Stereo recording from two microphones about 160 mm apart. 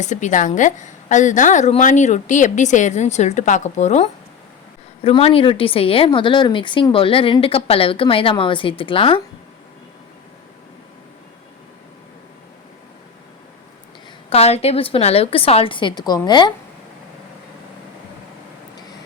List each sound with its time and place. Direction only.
0.0 s a woman's voice: 50° left (ahead or behind); by 9.2 s 35° left (ahead or behind)
14.3 s a woman's voice: 40° left (ahead or behind)